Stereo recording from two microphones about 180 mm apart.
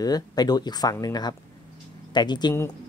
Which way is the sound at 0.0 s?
20° left (ahead or behind).